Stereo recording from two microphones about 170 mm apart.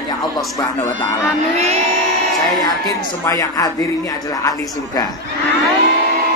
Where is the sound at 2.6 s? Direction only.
20° left (ahead or behind).